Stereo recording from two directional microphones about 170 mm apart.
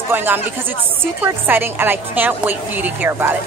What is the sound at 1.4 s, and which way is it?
A woman's voice, 10° right (ahead or behind).